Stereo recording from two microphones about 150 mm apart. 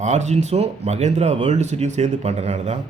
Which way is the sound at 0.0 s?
50° right (ahead or behind).